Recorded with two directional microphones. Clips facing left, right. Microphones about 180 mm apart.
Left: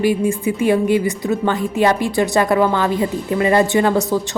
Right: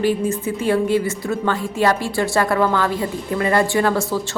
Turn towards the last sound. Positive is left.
turn(degrees=20)  # may be behind; listen again after turning